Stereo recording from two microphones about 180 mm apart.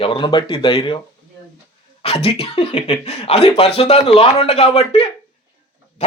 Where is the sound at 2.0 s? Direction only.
35° left (ahead or behind).